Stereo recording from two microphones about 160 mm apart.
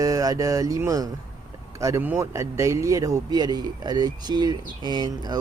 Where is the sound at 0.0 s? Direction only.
20° right (ahead or behind).